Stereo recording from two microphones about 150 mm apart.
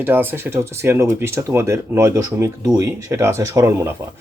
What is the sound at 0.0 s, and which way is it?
Speech, 15° right (ahead or behind).